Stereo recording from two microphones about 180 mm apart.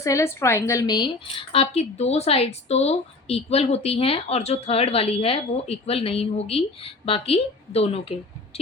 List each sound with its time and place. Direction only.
0.0 s a woman's voice: 15° left (ahead or behind); by 8.1 s 30° left (ahead or behind)